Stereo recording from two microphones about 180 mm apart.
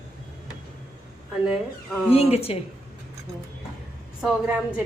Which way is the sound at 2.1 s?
35° left (ahead or behind).